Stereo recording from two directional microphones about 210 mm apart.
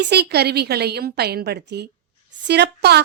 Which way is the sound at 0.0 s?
50° right (ahead or behind).